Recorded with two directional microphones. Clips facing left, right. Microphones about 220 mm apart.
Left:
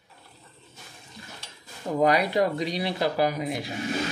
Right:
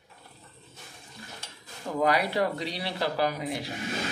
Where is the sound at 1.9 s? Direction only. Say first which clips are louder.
Left 4 dB; 20° left (ahead or behind).